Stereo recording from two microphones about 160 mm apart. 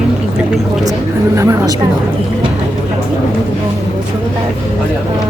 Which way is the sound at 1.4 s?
20° right (ahead or behind).